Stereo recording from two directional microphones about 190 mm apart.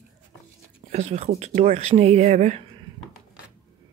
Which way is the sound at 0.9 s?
35° right (ahead or behind).